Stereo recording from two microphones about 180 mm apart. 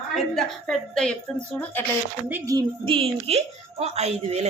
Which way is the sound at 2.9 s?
30° right (ahead or behind).